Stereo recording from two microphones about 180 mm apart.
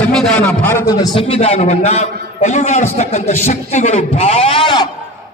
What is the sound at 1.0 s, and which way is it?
A man's voice, 30° left (ahead or behind).